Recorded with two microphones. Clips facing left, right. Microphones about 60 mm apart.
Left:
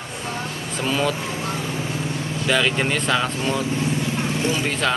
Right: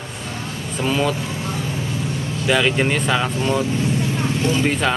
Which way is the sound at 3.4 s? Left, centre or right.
Right.